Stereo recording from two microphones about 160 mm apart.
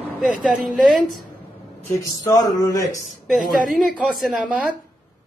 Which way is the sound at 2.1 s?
20° left (ahead or behind).